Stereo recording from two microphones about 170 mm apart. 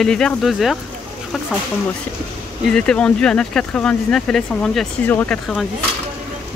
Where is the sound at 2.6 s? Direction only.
5° left (ahead or behind).